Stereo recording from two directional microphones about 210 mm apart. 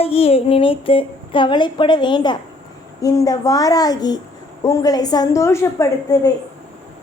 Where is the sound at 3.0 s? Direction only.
15° left (ahead or behind).